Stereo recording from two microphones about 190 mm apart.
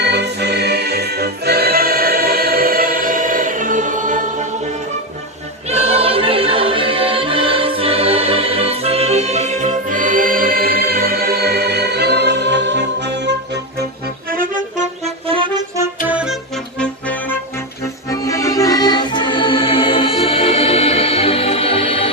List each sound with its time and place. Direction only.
0.0 s music: 60° right (ahead or behind); by 4.3 s 40° right (ahead or behind)
5.7 s music: 30° right (ahead or behind); by 13.3 s 65° right (ahead or behind)
14.3 s music: 45° right (ahead or behind)
16.0 s music: 5° right (ahead or behind)
16.8 s music: 5° left (ahead or behind); by 22.1 s 30° left (ahead or behind)